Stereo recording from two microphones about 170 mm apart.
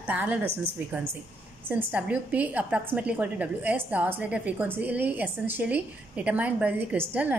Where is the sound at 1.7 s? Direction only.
10° right (ahead or behind).